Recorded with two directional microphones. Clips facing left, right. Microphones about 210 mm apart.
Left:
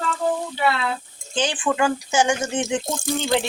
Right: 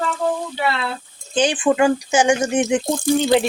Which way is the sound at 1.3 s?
15° right (ahead or behind).